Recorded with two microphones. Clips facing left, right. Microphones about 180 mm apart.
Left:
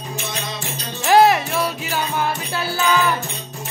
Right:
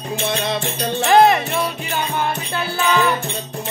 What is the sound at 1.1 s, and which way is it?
Music, 5° left (ahead or behind).